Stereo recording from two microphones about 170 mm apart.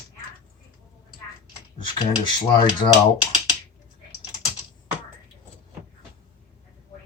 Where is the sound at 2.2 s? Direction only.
25° left (ahead or behind).